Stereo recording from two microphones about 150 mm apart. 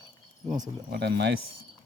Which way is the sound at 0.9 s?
90° right.